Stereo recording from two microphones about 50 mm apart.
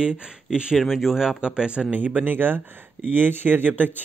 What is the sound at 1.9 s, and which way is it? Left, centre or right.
Speech, right.